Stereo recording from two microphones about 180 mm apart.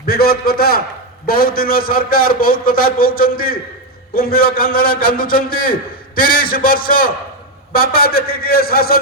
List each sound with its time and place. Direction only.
0.0 s a man's voice: 55° left (ahead or behind)